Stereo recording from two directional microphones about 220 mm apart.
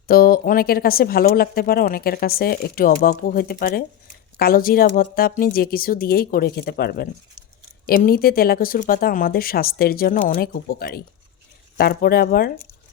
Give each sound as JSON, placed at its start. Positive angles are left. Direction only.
{"t": 0.1, "sound": "speech", "side_deg": 40}